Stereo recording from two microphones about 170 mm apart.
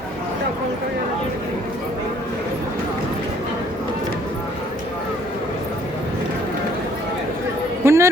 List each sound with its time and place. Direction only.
7.9 s music: 15° right (ahead or behind)